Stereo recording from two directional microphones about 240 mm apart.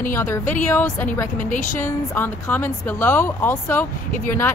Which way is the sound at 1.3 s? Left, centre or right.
Left.